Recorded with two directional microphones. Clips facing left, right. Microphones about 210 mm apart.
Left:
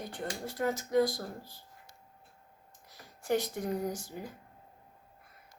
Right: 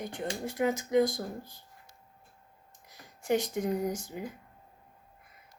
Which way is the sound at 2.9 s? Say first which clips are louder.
Right 2 dB; 20° right (ahead or behind).